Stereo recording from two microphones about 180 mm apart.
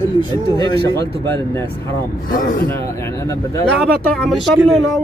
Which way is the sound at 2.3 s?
50° left (ahead or behind).